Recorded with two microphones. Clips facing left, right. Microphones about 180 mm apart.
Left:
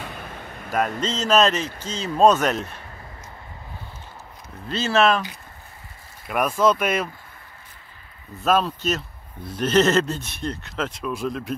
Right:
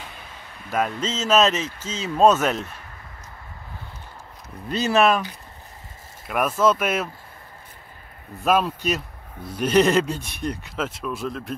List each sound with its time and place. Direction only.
0.0 s a sound: 55° left (ahead or behind)
0.7 s speech: centre (ahead or behind)
4.6 s speech: 15° right (ahead or behind)
6.2 s speech: centre (ahead or behind)
8.5 s speech: 10° right (ahead or behind)